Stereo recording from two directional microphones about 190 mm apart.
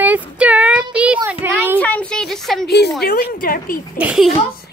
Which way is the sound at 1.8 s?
5° left (ahead or behind).